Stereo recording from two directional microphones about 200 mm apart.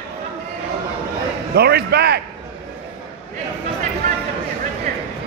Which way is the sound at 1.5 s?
50° right (ahead or behind).